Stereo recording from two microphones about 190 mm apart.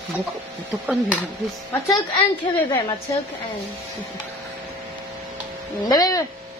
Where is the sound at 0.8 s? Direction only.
5° right (ahead or behind).